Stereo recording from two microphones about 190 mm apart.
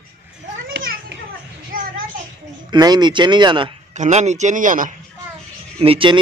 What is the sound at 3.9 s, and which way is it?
A man's voice, 40° right (ahead or behind).